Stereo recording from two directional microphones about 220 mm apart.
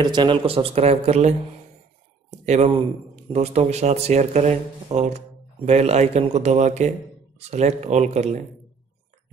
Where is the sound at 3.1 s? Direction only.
30° right (ahead or behind).